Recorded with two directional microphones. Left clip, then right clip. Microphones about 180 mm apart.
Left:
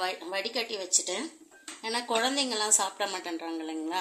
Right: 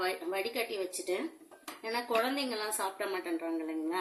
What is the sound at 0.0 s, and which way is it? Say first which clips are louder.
Speech: left 2 dB; 50° left (ahead or behind).